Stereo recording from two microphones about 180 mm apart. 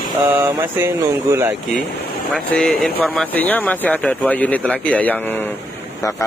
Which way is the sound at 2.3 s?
5° left (ahead or behind).